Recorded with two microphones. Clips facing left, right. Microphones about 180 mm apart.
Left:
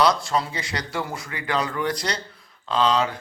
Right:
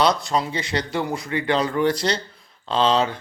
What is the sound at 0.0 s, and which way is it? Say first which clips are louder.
Speech: right 1 dB; 20° right (ahead or behind).